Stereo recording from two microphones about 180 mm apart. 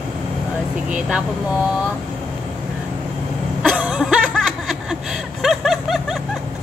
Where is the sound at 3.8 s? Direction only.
5° right (ahead or behind).